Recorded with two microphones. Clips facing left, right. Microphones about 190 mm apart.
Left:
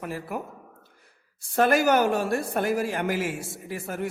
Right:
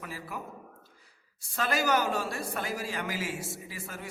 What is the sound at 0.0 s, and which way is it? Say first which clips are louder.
A woman's voice: left 7 dB; 55° left (ahead or behind).